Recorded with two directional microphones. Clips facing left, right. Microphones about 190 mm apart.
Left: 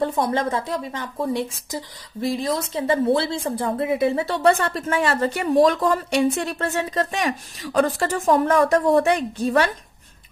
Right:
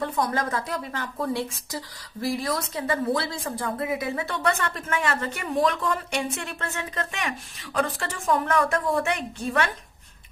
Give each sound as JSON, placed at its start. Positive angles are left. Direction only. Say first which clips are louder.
{"t": 0.0, "sound": "a woman's voice", "louder": "left 5 dB", "side_deg": 30}